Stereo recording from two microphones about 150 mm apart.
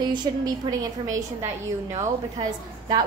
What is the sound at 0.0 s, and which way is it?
A woman's voice, 30° right (ahead or behind).